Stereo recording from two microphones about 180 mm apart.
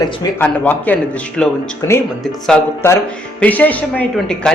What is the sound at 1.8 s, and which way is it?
Speech, 20° left (ahead or behind).